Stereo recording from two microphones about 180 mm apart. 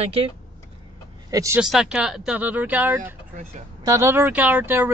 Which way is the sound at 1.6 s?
5° right (ahead or behind).